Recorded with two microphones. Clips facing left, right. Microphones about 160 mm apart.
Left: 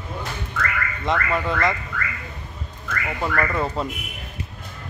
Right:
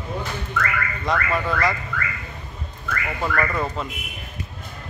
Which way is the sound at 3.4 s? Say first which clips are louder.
Left 1 dB; 10° left (ahead or behind).